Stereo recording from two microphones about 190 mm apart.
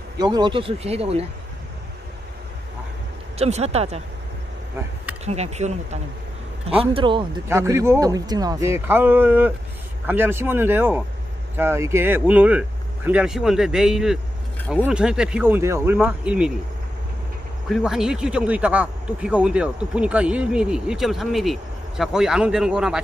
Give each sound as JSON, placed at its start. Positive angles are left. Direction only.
{"t": 0.2, "sound": "speech", "side_deg": -20}
{"t": 3.3, "sound": "speech", "side_deg": -35}
{"t": 5.2, "sound": "speech", "side_deg": -35}
{"t": 7.4, "sound": "speech", "side_deg": -15}
{"t": 17.6, "sound": "speech", "side_deg": 0}